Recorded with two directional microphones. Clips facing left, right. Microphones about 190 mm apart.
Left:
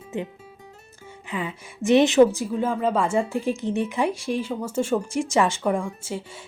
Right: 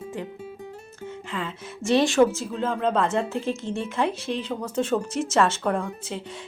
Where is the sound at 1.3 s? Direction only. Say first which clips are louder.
Left 4 dB; 15° left (ahead or behind).